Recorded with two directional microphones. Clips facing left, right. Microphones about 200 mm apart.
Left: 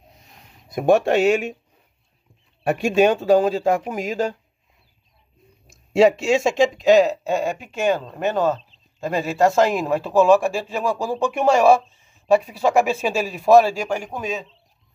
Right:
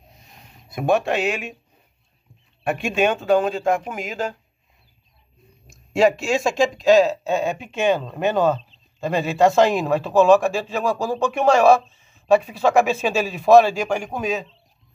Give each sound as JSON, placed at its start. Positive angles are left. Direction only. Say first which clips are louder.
{"t": 0.7, "sound": "speech", "louder": "left 3 dB", "side_deg": 45}
{"t": 2.6, "sound": "speech", "louder": "left 4 dB", "side_deg": 40}
{"t": 5.7, "sound": "speech", "louder": "left 2 dB", "side_deg": 25}